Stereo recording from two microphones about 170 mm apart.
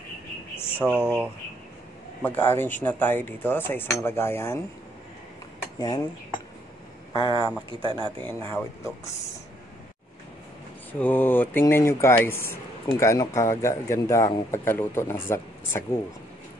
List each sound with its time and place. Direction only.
0.7 s speech: 10° right (ahead or behind)
2.2 s speech: 15° left (ahead or behind)
5.8 s speech: 20° left (ahead or behind)
7.2 s speech: 30° left (ahead or behind)
7.8 s a man's voice: 25° right (ahead or behind)
8.4 s speech: 15° left (ahead or behind)
10.9 s speech: 10° left (ahead or behind)